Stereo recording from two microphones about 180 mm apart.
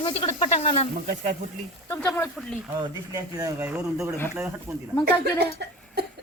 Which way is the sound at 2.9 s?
20° right (ahead or behind).